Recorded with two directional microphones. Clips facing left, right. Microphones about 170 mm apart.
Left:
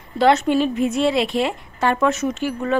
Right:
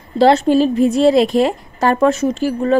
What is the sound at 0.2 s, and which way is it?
A woman's voice, 30° right (ahead or behind).